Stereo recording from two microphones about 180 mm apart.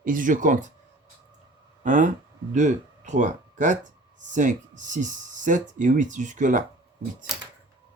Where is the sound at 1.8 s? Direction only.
45° right (ahead or behind).